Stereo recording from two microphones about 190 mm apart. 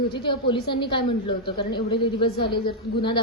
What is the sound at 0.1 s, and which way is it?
A woman's voice, 25° left (ahead or behind).